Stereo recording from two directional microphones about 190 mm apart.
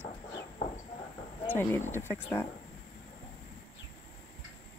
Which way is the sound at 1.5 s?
10° left (ahead or behind).